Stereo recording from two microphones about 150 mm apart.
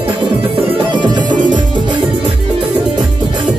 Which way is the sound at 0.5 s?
30° right (ahead or behind).